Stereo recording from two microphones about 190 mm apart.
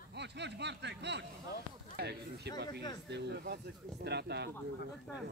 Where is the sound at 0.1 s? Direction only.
65° right (ahead or behind).